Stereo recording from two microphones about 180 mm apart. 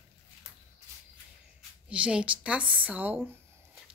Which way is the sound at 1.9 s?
5° right (ahead or behind).